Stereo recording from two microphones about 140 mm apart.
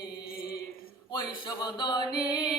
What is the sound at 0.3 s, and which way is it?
Mantra, 90° left.